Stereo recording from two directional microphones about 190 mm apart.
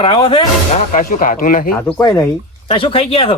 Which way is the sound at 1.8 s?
15° left (ahead or behind).